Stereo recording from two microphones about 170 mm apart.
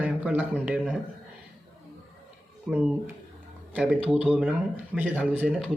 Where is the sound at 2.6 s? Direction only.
10° right (ahead or behind).